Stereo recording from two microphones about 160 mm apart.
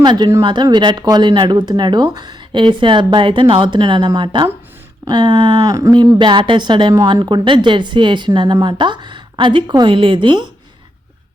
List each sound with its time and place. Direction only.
0.0 s speech: 25° right (ahead or behind)